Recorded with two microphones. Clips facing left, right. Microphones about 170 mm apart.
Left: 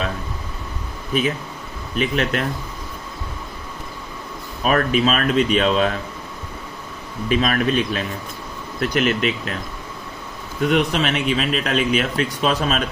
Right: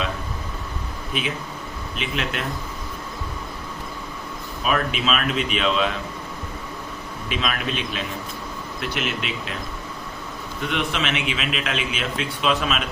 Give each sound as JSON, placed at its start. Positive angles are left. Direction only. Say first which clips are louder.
{"t": 2.0, "sound": "a man's voice", "louder": "left 7 dB", "side_deg": 45}
{"t": 4.6, "sound": "a man's voice", "louder": "left 6 dB", "side_deg": 45}
{"t": 7.3, "sound": "a man's voice", "louder": "left 8 dB", "side_deg": 45}
{"t": 10.6, "sound": "a man's voice", "louder": "left 7 dB", "side_deg": 45}